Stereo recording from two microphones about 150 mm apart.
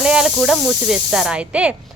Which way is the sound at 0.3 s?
Centre (ahead or behind).